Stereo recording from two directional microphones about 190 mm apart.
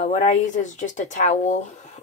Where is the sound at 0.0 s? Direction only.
40° left (ahead or behind).